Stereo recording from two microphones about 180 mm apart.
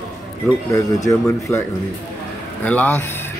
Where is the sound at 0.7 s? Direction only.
20° left (ahead or behind).